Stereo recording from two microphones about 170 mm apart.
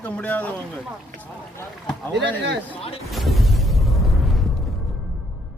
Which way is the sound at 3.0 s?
Centre (ahead or behind).